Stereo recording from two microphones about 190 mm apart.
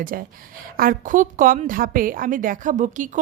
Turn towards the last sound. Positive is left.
turn(degrees=-40)  # may be behind; listen again after turning